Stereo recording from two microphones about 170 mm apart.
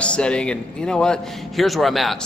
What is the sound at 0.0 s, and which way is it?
A man's voice, 5° left (ahead or behind).